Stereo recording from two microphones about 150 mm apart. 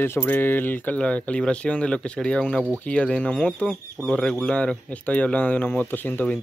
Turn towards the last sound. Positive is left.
turn(degrees=10)  # may be behind; listen again after turning